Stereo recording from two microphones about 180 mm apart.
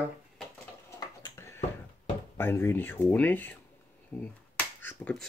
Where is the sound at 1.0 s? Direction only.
20° left (ahead or behind).